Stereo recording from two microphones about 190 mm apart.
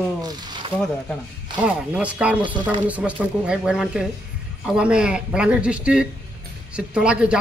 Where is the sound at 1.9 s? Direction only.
5° right (ahead or behind).